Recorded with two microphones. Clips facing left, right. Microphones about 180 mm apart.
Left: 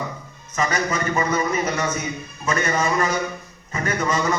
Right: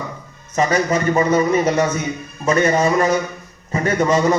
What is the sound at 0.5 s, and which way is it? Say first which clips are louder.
A man's voice: right 6 dB; 35° right (ahead or behind).